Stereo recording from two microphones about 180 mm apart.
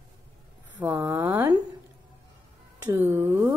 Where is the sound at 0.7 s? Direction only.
10° right (ahead or behind).